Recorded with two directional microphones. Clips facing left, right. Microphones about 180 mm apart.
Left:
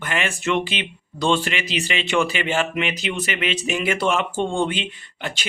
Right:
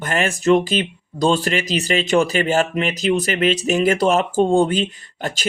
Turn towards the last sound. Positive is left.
turn(degrees=-40)  # may be behind; listen again after turning